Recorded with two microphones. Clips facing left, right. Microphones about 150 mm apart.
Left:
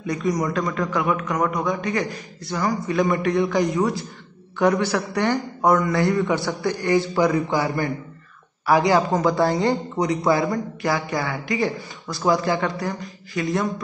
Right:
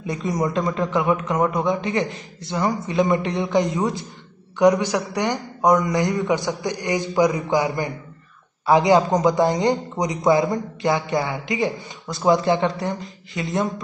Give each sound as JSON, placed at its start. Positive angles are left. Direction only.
{"t": 0.0, "sound": "a man's voice", "side_deg": -25}